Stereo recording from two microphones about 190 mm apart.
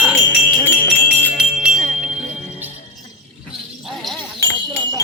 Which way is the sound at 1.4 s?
5° right (ahead or behind).